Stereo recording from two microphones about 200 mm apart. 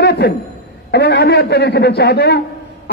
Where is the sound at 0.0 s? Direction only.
55° left (ahead or behind).